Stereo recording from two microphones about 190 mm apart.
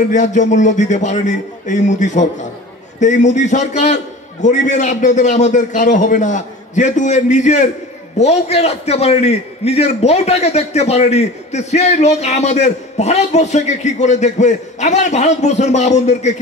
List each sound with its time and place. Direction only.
0.1 s a man's voice: 40° left (ahead or behind)